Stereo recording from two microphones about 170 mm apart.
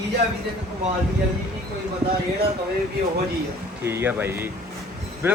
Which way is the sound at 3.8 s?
15° right (ahead or behind).